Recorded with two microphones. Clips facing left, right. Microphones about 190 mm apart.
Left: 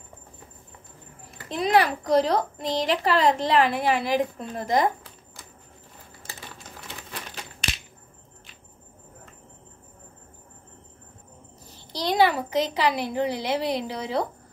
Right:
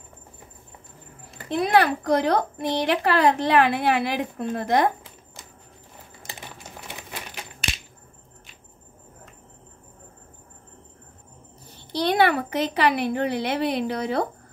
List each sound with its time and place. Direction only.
1.5 s a child's voice: 60° right (ahead or behind)
6.2 s a sound: 15° right (ahead or behind)
11.7 s a child's voice: 60° right (ahead or behind)